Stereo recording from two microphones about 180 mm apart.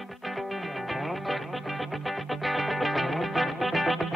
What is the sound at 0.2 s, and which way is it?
Music, centre (ahead or behind).